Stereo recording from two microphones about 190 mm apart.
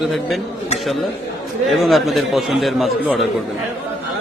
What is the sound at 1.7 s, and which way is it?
A man's voice, centre (ahead or behind).